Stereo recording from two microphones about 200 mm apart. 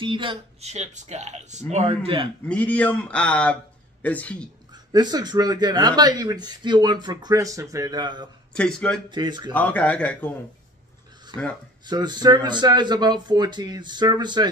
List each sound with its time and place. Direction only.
0.0 s speech: 25° right (ahead or behind)
2.4 s speech: 5° left (ahead or behind)
4.9 s speech: 20° right (ahead or behind)
8.5 s speech: 5° left (ahead or behind)
9.1 s speech: 20° right (ahead or behind)
9.5 s speech: 10° left (ahead or behind)
11.3 s speech: 25° right (ahead or behind)